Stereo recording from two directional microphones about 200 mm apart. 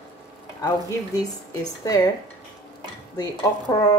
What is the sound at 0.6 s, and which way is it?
A woman's voice, 20° left (ahead or behind).